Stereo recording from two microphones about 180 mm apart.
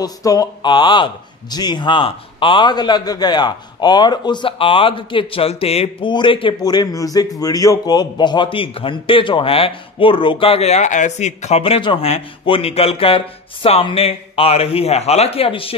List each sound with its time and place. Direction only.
0.0 s speech: 20° left (ahead or behind)